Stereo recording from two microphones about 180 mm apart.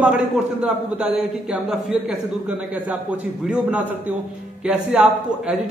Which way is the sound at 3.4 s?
5° right (ahead or behind).